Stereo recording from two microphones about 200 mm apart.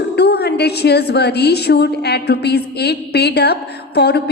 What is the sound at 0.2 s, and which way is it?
A woman's voice, 55° left (ahead or behind).